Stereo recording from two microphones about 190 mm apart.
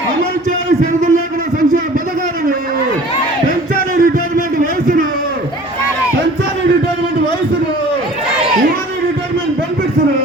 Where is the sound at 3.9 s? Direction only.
45° right (ahead or behind).